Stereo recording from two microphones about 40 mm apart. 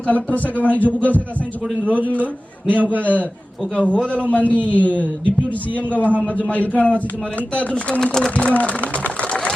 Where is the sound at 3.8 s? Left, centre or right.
Left.